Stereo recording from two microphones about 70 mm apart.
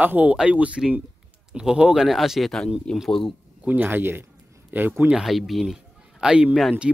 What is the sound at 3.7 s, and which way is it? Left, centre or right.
Speech, right.